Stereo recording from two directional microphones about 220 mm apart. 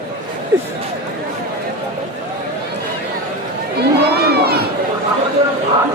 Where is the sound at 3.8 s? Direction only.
45° right (ahead or behind).